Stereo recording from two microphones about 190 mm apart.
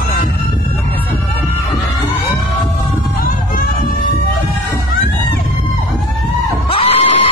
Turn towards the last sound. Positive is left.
turn(degrees=30)  # may be behind; listen again after turning